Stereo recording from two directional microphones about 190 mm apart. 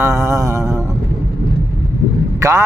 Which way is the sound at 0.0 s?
15° right (ahead or behind).